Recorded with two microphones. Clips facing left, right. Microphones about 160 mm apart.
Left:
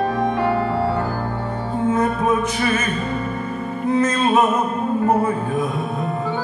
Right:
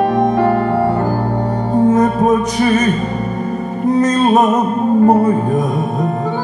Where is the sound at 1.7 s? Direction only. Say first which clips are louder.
Right 7 dB; 40° right (ahead or behind).